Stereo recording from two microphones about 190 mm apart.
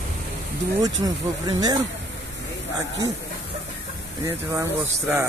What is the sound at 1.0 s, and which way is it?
Speech, 20° right (ahead or behind).